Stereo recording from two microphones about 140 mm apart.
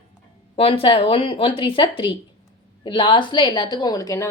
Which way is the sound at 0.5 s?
40° left (ahead or behind).